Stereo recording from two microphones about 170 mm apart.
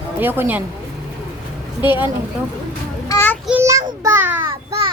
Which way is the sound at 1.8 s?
30° left (ahead or behind).